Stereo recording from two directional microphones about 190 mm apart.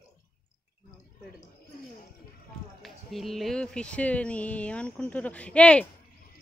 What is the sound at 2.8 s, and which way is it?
Speech, centre (ahead or behind).